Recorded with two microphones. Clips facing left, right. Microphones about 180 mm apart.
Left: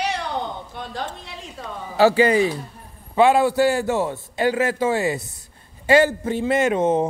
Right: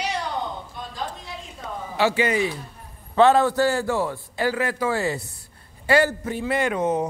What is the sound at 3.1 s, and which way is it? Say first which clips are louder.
A man's voice: left 1 dB; 10° left (ahead or behind).